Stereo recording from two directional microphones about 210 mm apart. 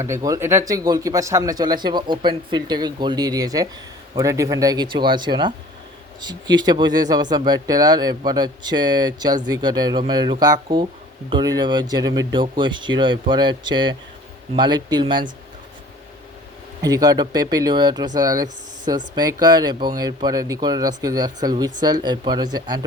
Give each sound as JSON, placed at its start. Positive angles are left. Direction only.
{"t": 0.0, "sound": "speech", "side_deg": -15}
{"t": 16.8, "sound": "speech", "side_deg": -15}